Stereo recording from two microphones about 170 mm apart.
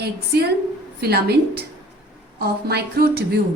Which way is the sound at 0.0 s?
70° right (ahead or behind).